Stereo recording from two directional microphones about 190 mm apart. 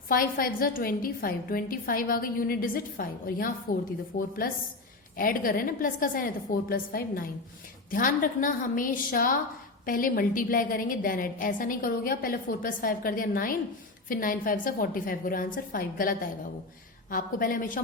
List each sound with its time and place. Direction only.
0.1 s a woman's voice: 50° left (ahead or behind)